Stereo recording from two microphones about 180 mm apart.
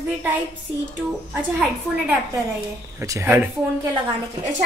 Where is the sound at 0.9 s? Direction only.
10° right (ahead or behind).